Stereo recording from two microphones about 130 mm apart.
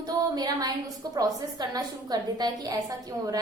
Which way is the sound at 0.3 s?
30° right (ahead or behind).